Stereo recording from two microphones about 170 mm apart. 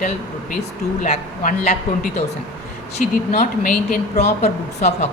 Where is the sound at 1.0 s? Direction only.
45° left (ahead or behind).